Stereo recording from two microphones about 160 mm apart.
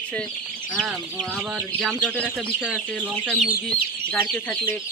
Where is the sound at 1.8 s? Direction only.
Centre (ahead or behind).